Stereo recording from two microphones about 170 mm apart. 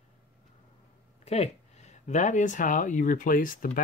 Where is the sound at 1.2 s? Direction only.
40° left (ahead or behind).